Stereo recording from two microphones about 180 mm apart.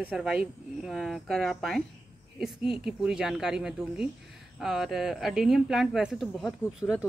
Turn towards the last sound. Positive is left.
turn(degrees=0)  # may be behind; listen again after turning